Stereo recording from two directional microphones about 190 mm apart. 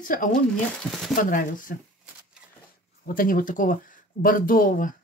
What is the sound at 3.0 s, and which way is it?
Speech, 45° left (ahead or behind).